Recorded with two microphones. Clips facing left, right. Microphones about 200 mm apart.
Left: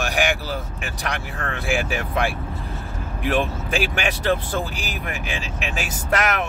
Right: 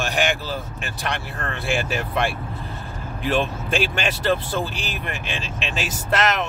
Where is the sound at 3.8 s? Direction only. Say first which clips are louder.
Even; 10° left (ahead or behind).